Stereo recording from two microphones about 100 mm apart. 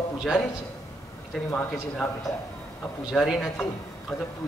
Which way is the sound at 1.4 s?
20° left (ahead or behind).